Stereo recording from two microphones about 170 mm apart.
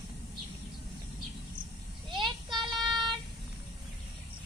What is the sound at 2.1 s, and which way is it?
Child singing, 25° right (ahead or behind).